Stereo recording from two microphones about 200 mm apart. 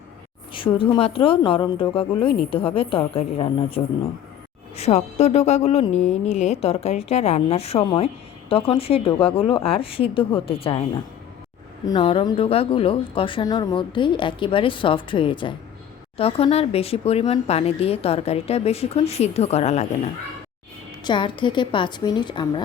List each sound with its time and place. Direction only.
0.5 s a woman's voice: 25° left (ahead or behind)
4.8 s a woman's voice: 30° left (ahead or behind)
21.0 s a woman's voice: 25° left (ahead or behind)